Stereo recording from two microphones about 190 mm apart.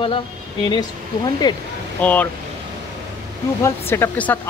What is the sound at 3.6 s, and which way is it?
Speech, 15° left (ahead or behind).